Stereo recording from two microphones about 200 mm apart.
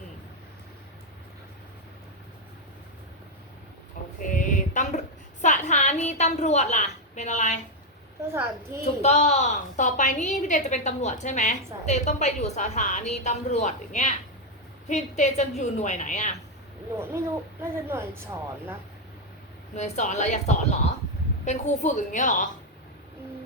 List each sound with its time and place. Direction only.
4.2 s a sound: 40° left (ahead or behind)
5.4 s a woman's voice: 35° left (ahead or behind)
8.3 s a woman's voice: 10° right (ahead or behind)
9.0 s a woman's voice: 35° left (ahead or behind)
17.6 s a woman's voice: 10° right (ahead or behind)
19.7 s a woman's voice: 35° left (ahead or behind)